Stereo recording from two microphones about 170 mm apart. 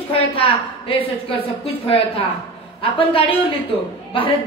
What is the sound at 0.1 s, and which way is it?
A woman's voice, 30° left (ahead or behind).